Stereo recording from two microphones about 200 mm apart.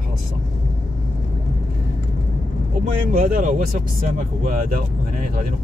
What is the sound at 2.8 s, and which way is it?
Speech, 45° right (ahead or behind).